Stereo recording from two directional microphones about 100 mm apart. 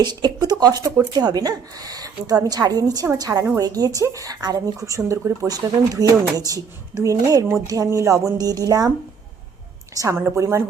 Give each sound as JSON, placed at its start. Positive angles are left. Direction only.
{"t": 0.0, "sound": "speech", "side_deg": -45}
{"t": 9.9, "sound": "a woman's voice", "side_deg": -35}